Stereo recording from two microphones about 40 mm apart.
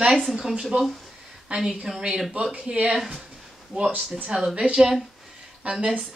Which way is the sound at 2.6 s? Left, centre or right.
Right.